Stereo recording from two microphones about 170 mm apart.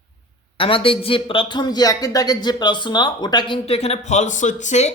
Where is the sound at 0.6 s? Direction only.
30° left (ahead or behind).